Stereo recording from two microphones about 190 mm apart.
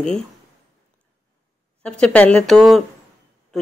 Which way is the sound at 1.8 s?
5° left (ahead or behind).